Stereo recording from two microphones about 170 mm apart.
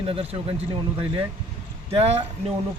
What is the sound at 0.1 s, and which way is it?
A man's voice, 35° right (ahead or behind).